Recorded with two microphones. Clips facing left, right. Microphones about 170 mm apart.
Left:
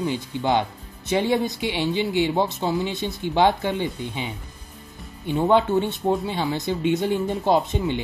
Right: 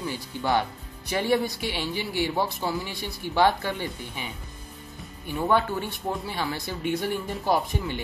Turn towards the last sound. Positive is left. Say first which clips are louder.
# left 5 dB
turn(degrees=20)  # may be behind; listen again after turning